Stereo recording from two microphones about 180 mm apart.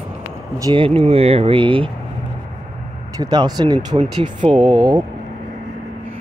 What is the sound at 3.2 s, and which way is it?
Speech, 25° right (ahead or behind).